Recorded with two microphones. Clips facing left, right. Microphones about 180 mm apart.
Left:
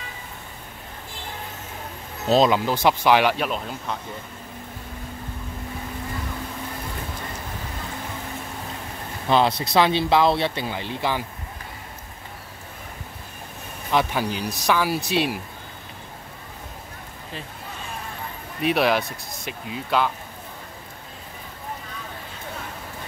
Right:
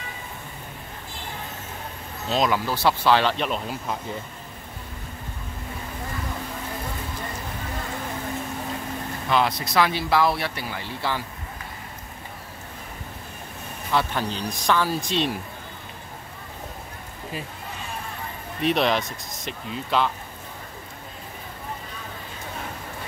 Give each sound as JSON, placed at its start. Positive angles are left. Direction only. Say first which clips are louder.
{"t": 2.2, "sound": "speech", "louder": "left 6 dB", "side_deg": 35}
{"t": 2.5, "sound": "speech", "louder": "left 2 dB", "side_deg": 20}
{"t": 3.4, "sound": "speech", "louder": "even", "side_deg": 0}
{"t": 9.3, "sound": "speech", "louder": "left 3 dB", "side_deg": 25}
{"t": 13.9, "sound": "speech", "louder": "left 2 dB", "side_deg": 10}
{"t": 18.6, "sound": "speech", "louder": "left 1 dB", "side_deg": 5}